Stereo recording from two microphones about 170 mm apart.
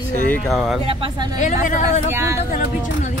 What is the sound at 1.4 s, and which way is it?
Speech, 45° left (ahead or behind).